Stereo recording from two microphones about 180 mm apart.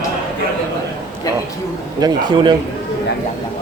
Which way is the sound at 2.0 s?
25° right (ahead or behind).